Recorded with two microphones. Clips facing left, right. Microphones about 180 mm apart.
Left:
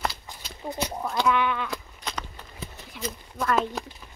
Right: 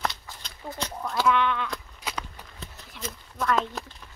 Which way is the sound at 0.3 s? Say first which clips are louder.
Left 4 dB; 15° left (ahead or behind).